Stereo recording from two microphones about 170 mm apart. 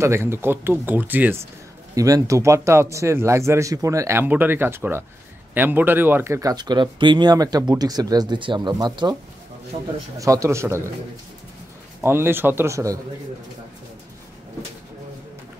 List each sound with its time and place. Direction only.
0.0 s speech: 15° right (ahead or behind)
10.1 s speech: 20° right (ahead or behind)
12.0 s speech: 15° right (ahead or behind)